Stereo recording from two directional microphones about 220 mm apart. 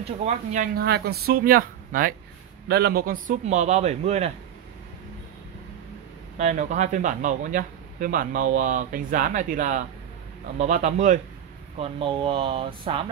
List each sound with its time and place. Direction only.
0.2 s speech: 30° right (ahead or behind)
6.3 s speech: 30° right (ahead or behind)